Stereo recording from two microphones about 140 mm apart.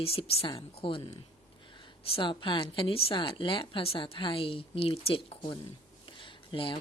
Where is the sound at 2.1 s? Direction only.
35° left (ahead or behind).